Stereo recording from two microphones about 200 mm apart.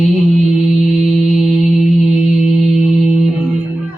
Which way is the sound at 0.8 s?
35° right (ahead or behind).